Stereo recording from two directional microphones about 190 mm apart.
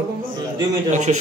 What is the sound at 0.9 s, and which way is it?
Speech, 40° right (ahead or behind).